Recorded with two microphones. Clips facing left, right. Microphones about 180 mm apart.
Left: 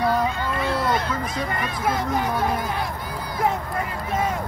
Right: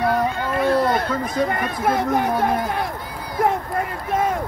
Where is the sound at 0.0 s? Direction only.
55° right (ahead or behind).